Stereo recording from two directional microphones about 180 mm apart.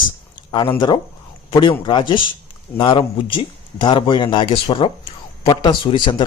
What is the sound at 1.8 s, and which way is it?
Speech, 25° left (ahead or behind).